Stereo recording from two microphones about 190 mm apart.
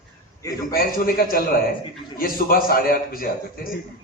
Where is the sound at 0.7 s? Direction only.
50° left (ahead or behind).